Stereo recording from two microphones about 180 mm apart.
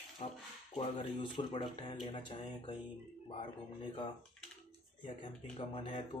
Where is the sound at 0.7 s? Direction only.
35° left (ahead or behind).